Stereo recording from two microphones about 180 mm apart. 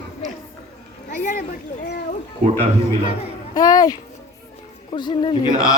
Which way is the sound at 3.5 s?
20° left (ahead or behind).